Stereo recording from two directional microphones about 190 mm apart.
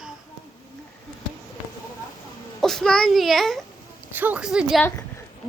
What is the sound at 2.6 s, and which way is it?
A woman's voice, centre (ahead or behind).